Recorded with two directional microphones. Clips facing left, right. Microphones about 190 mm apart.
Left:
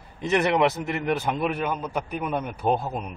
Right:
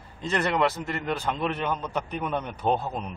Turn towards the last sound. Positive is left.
turn(degrees=10)  # may be behind; listen again after turning